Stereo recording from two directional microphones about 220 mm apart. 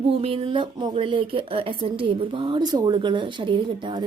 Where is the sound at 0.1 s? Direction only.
25° right (ahead or behind).